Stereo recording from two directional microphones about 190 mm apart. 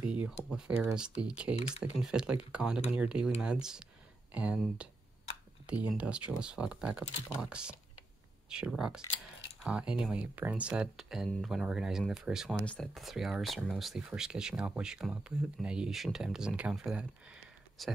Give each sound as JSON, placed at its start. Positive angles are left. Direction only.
{"t": 0.0, "sound": "speech", "side_deg": -5}
{"t": 1.6, "sound": "speech", "side_deg": 30}
{"t": 2.0, "sound": "speech", "side_deg": -5}
{"t": 4.3, "sound": "speech", "side_deg": -5}